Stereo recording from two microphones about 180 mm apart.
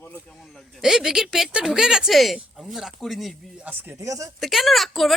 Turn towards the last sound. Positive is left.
turn(degrees=0)  # may be behind; listen again after turning